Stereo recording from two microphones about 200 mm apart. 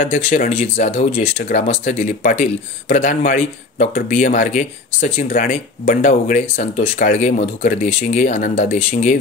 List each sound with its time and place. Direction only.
0.0 s speech: 45° left (ahead or behind)